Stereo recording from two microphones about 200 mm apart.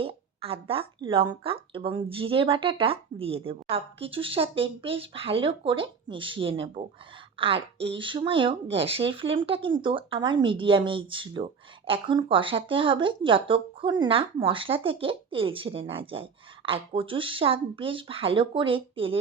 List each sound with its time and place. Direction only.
0.0 s a woman's voice: 30° right (ahead or behind)